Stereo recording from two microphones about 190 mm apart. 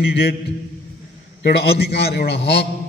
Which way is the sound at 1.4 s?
60° left (ahead or behind).